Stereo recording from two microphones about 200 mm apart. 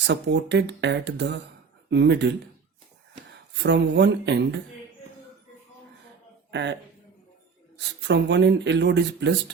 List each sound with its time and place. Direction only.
0.1 s speech: 60° right (ahead or behind)
3.6 s speech: 60° right (ahead or behind)
6.5 s a man's voice: 60° right (ahead or behind)
8.0 s speech: 60° right (ahead or behind)